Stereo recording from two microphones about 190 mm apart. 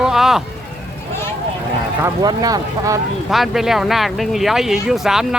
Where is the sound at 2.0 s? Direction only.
20° right (ahead or behind).